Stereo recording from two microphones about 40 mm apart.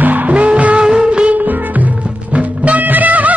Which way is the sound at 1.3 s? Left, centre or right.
Right.